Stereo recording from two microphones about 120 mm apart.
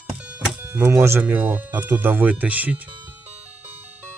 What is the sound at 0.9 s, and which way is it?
Speech, 20° right (ahead or behind).